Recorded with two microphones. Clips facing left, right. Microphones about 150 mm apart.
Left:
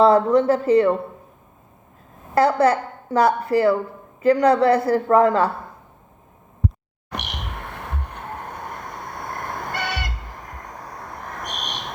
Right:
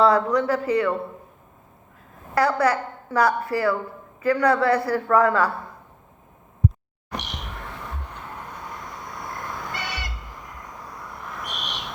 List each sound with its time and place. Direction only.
0.0 s a woman's voice: 25° left (ahead or behind)
2.3 s a woman's voice: 25° left (ahead or behind)
7.2 s a sound: 60° left (ahead or behind); by 11.9 s 45° left (ahead or behind)